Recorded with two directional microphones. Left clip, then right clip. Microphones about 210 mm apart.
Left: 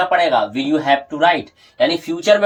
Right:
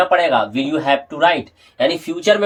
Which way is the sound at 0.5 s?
35° right (ahead or behind).